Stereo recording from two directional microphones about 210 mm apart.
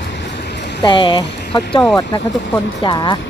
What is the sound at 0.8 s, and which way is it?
Speech, 25° left (ahead or behind).